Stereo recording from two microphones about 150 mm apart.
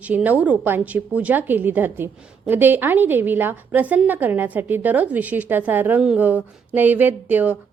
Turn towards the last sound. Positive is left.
turn(degrees=-10)  # may be behind; listen again after turning